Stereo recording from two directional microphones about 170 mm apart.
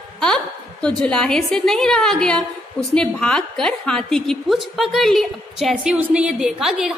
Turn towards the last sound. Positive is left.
turn(degrees=0)  # may be behind; listen again after turning